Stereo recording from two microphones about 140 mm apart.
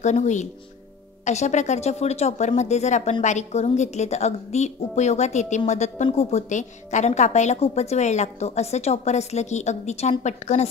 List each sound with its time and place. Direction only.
0.0 s a woman's voice: 55° left (ahead or behind)